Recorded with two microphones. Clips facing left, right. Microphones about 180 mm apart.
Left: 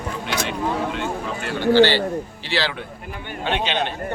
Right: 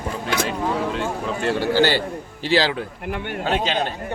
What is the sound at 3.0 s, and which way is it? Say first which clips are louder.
Speech: right 8 dB; 70° right (ahead or behind).